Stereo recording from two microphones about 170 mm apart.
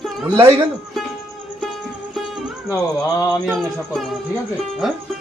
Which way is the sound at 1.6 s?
Centre (ahead or behind).